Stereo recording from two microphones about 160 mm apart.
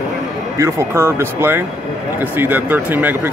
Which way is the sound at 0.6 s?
20° right (ahead or behind).